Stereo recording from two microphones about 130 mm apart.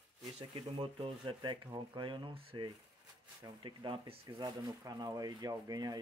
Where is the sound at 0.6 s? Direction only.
40° right (ahead or behind).